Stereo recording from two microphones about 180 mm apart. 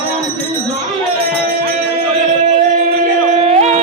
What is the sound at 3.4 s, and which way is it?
Music, 35° right (ahead or behind).